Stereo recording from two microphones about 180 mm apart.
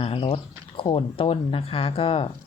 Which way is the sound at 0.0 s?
35° left (ahead or behind).